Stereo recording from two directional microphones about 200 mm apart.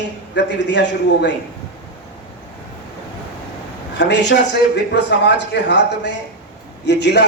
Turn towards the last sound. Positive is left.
turn(degrees=60)  # may be behind; listen again after turning